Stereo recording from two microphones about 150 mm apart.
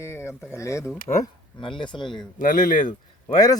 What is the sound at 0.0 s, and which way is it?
Speech, 20° left (ahead or behind).